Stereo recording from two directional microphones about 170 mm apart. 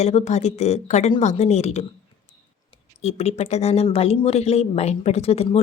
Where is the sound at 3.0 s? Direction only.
40° left (ahead or behind).